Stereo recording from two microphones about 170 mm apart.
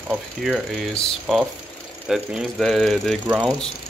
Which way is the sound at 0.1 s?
Centre (ahead or behind).